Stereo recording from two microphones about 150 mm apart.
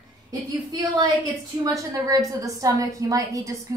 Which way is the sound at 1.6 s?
20° right (ahead or behind).